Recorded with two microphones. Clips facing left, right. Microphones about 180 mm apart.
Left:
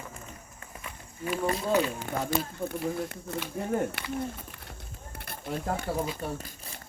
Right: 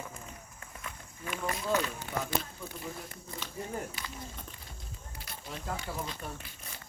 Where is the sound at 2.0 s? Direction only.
50° left (ahead or behind).